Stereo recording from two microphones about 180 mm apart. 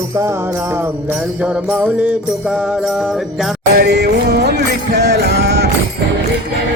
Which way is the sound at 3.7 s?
65° right (ahead or behind).